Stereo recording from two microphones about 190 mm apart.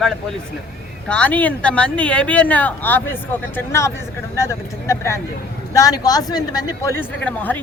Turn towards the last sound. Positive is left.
turn(degrees=10)  # may be behind; listen again after turning